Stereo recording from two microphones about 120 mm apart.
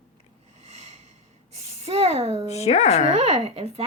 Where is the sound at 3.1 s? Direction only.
60° right (ahead or behind).